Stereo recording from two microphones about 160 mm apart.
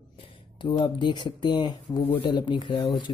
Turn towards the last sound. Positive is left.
turn(degrees=30)  # may be behind; listen again after turning